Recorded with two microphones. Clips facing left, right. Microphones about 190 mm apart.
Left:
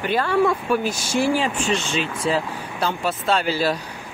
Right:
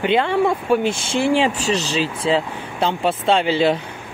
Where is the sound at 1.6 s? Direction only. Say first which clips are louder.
Right 3 dB; 35° right (ahead or behind).